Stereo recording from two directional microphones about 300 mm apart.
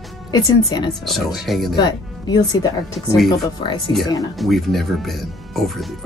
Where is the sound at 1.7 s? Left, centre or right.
Centre.